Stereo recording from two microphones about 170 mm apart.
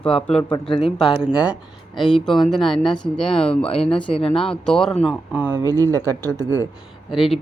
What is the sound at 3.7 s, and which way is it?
Speech, 35° left (ahead or behind).